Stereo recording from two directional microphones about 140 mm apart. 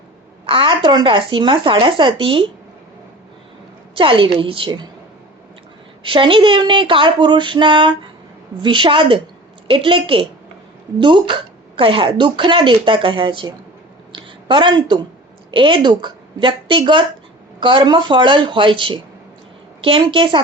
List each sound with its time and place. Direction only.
0.4 s a woman's voice: 40° right (ahead or behind)
3.9 s a woman's voice: 40° right (ahead or behind)
6.0 s a woman's voice: 35° right (ahead or behind)
14.1 s a sound: 35° right (ahead or behind)
15.5 s a woman's voice: 35° right (ahead or behind)